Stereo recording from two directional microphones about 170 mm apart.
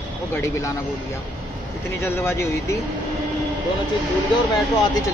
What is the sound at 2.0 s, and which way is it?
Speech, 15° left (ahead or behind).